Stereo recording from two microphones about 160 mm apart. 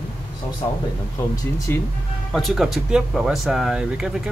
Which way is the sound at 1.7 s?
15° left (ahead or behind).